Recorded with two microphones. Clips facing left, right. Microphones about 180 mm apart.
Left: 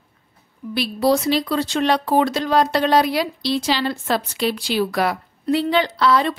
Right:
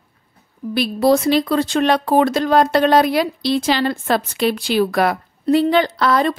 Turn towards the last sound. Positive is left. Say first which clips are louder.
# right 1 dB
turn(degrees=-50)  # may be behind; listen again after turning